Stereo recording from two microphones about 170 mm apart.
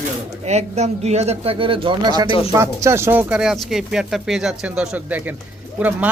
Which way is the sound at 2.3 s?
30° left (ahead or behind).